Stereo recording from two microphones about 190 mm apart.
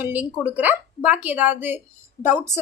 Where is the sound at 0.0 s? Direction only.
10° right (ahead or behind).